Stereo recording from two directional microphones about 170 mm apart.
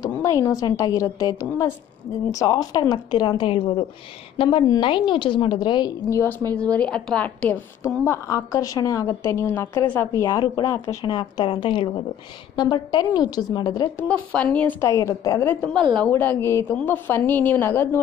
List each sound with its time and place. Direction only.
0.0 s a woman's voice: 20° left (ahead or behind)
14.0 s a woman's voice: 10° left (ahead or behind)